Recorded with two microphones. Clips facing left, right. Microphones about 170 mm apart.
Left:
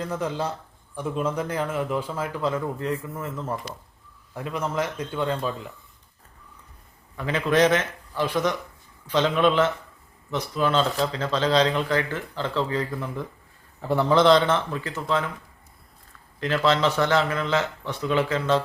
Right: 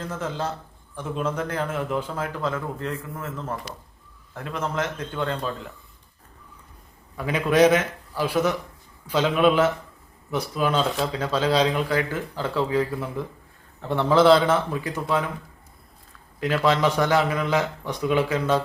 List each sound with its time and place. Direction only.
0.1 s a man's voice: 10° left (ahead or behind)
7.2 s speech: 10° right (ahead or behind)
16.4 s speech: 10° right (ahead or behind)